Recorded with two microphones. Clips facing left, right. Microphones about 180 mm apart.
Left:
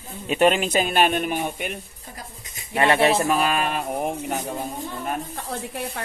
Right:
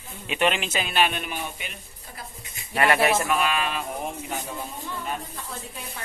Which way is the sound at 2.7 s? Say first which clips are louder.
Left 3 dB; 25° left (ahead or behind).